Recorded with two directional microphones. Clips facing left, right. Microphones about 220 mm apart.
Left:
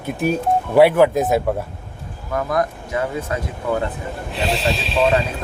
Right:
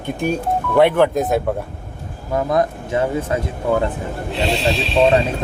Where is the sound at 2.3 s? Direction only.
25° right (ahead or behind).